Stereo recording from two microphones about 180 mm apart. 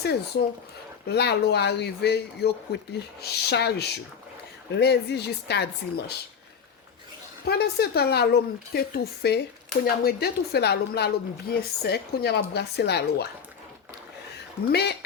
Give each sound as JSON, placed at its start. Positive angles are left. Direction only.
{"t": 0.0, "sound": "speech", "side_deg": 65}
{"t": 7.4, "sound": "speech", "side_deg": 60}
{"t": 14.3, "sound": "speech", "side_deg": 65}